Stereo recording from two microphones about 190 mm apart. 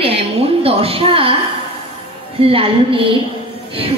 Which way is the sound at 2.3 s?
30° right (ahead or behind).